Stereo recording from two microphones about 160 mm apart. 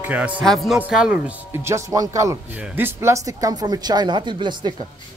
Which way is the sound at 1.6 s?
20° right (ahead or behind).